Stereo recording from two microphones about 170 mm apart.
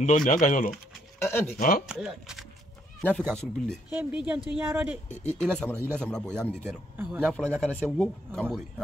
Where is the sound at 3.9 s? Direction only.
5° right (ahead or behind).